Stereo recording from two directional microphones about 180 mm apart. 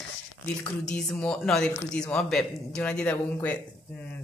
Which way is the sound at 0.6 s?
5° left (ahead or behind).